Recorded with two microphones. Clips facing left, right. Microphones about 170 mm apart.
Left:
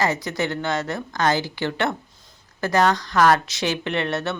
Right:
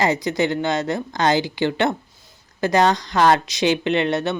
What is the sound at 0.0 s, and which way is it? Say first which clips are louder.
Speech: right 4 dB; 20° right (ahead or behind).